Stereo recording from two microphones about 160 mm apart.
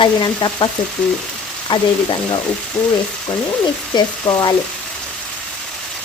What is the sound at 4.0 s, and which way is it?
Speech, 25° left (ahead or behind).